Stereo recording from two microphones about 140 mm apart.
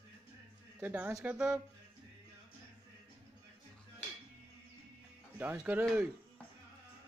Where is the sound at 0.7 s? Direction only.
10° right (ahead or behind).